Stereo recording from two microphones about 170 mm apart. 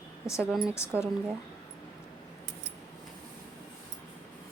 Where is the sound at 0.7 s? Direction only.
15° left (ahead or behind).